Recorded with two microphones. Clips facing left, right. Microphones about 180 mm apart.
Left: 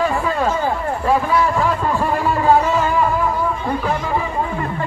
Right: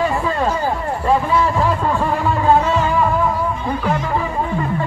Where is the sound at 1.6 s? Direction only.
5° left (ahead or behind).